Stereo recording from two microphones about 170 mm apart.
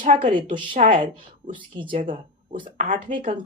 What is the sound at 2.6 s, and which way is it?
Speech, 50° right (ahead or behind).